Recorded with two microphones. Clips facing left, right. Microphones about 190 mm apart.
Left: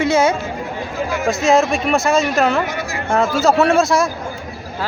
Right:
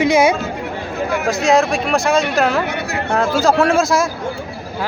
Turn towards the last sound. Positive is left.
turn(degrees=0)  # may be behind; listen again after turning